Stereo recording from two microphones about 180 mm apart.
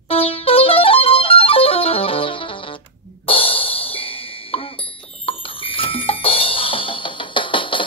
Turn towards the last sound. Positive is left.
turn(degrees=30)  # may be behind; listen again after turning